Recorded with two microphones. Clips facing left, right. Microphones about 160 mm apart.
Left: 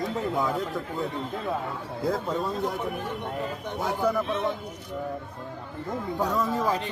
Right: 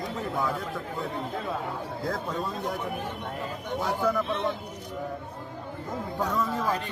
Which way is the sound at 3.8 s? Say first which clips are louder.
Left 1 dB; 15° left (ahead or behind).